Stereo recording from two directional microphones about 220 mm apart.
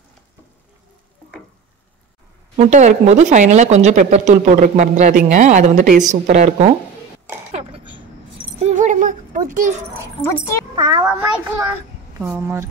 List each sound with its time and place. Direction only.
2.5 s speech: 30° right (ahead or behind)
8.5 s a sound: 30° right (ahead or behind)
10.8 s a child's voice: 15° right (ahead or behind)